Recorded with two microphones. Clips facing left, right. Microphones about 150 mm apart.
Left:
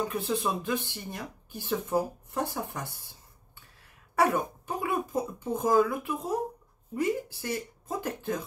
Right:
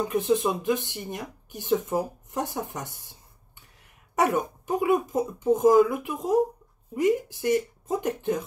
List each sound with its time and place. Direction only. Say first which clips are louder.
0.1 s speech: right 6 dB; 15° right (ahead or behind)
4.1 s speech: right 2 dB; 15° right (ahead or behind)